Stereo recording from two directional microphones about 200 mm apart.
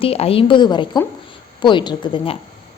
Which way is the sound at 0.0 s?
30° left (ahead or behind).